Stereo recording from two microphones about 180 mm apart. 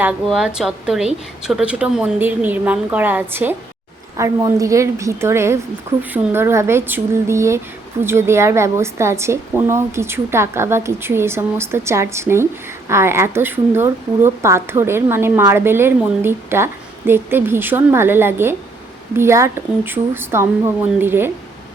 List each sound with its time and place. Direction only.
0.0 s a woman's voice: 5° right (ahead or behind)